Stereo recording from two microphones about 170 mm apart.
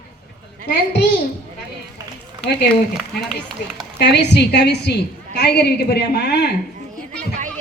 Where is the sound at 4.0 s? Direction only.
85° left.